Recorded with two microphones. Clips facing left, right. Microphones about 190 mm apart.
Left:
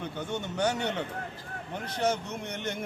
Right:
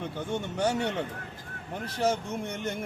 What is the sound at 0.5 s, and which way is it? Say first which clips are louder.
Speech: even; 5° right (ahead or behind).